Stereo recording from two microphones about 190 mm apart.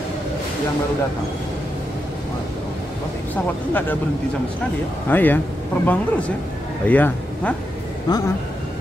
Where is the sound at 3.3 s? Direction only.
10° left (ahead or behind).